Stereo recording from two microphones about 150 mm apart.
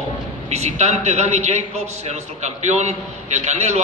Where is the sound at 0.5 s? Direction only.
50° right (ahead or behind).